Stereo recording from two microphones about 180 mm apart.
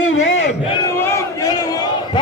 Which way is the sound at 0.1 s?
90° left.